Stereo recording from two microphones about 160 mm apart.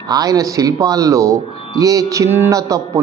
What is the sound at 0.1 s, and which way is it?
Speech, 25° right (ahead or behind).